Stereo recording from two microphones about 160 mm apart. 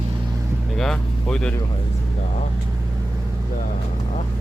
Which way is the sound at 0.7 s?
5° left (ahead or behind).